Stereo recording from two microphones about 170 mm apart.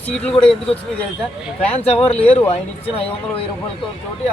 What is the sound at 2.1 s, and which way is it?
Speech, 35° left (ahead or behind).